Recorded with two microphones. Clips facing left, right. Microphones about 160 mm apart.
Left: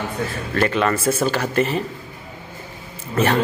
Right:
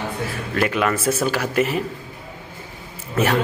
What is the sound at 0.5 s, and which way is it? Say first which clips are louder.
Speech: left 1 dB; 5° right (ahead or behind).